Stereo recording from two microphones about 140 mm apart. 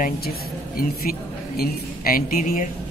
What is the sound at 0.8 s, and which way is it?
A woman's voice, 90° left.